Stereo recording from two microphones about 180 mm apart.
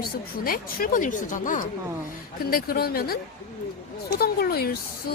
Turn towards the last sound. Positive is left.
turn(degrees=60)  # may be behind; listen again after turning